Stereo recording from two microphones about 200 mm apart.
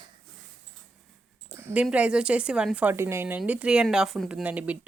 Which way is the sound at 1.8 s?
5° right (ahead or behind).